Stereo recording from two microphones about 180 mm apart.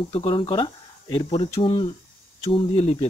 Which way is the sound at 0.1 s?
30° left (ahead or behind).